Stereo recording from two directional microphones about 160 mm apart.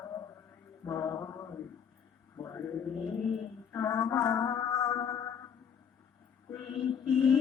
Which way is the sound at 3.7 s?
15° left (ahead or behind).